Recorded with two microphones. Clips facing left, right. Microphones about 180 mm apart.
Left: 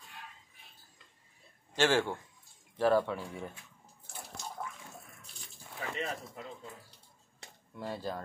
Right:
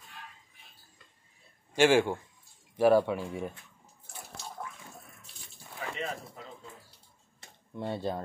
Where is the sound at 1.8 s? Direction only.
10° right (ahead or behind).